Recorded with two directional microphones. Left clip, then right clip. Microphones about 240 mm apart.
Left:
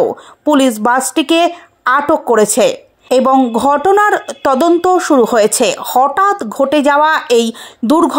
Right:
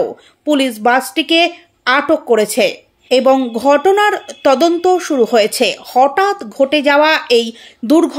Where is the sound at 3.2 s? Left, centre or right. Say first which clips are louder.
Left 2 dB; centre.